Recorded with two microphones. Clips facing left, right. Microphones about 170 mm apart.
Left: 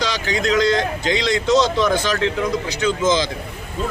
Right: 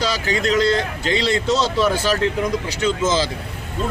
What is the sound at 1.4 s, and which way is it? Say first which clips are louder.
Speech: left 2 dB; 10° right (ahead or behind).